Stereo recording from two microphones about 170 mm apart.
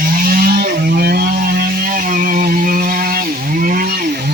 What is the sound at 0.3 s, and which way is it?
Vehicle, 60° right (ahead or behind).